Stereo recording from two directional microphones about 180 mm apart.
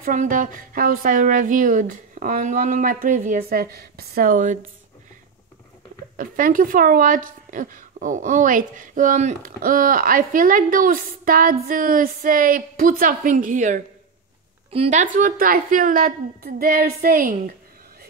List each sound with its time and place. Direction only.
0.0 s speech: 45° right (ahead or behind)
6.1 s speech: 50° right (ahead or behind)